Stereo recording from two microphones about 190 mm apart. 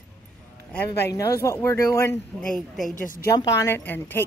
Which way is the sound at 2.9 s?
45° left (ahead or behind).